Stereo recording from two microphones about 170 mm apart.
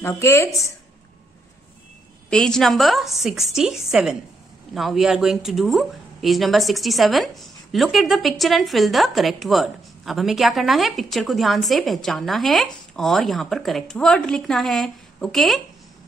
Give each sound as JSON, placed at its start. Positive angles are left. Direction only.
{"t": 0.0, "sound": "a woman's voice", "side_deg": 15}
{"t": 2.2, "sound": "speech", "side_deg": 5}